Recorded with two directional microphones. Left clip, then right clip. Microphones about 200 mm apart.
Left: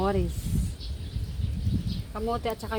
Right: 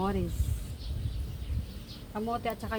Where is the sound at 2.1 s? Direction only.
45° left (ahead or behind).